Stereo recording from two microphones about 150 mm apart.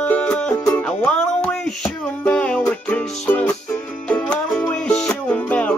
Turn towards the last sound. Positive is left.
turn(degrees=10)  # may be behind; listen again after turning